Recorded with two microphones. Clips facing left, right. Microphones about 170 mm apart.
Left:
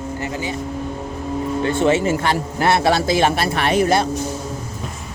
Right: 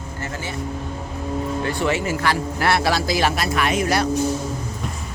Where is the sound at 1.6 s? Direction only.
25° left (ahead or behind).